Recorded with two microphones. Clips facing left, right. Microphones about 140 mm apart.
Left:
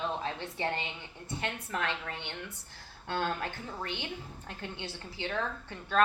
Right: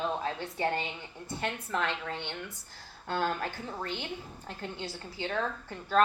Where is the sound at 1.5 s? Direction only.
25° right (ahead or behind).